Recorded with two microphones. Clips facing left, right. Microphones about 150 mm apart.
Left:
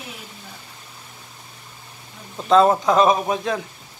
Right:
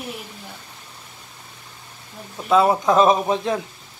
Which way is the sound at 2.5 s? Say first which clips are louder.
Left 2 dB; 5° right (ahead or behind).